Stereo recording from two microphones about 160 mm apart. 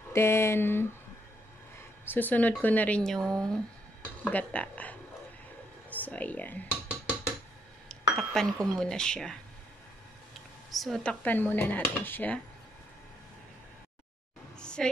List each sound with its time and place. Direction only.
0.1 s speech: 15° left (ahead or behind)
2.0 s speech: 10° left (ahead or behind)
7.9 s a sound: 5° left (ahead or behind)
8.7 s speech: 5° left (ahead or behind)
10.7 s speech: centre (ahead or behind)
14.6 s a sound: 5° left (ahead or behind)